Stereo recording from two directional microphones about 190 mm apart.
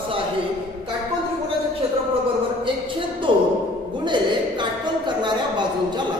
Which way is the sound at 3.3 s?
25° right (ahead or behind).